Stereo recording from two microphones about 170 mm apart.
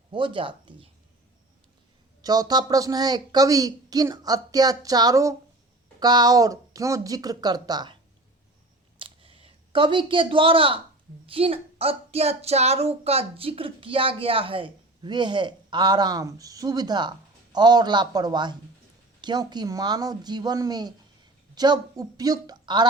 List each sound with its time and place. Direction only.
0.1 s speech: 30° right (ahead or behind)
2.2 s speech: 25° right (ahead or behind)
9.0 s a sound: 30° right (ahead or behind)
11.3 s speech: 35° right (ahead or behind)